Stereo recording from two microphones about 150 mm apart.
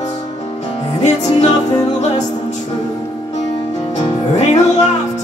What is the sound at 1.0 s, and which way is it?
Music, 50° left (ahead or behind).